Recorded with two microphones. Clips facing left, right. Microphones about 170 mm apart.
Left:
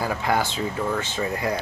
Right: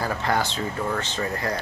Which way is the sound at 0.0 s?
10° left (ahead or behind).